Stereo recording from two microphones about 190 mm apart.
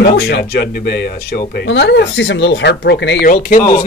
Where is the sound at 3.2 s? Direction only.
45° left (ahead or behind).